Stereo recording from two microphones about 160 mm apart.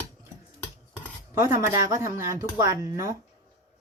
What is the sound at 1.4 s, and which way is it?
Speech, 15° right (ahead or behind).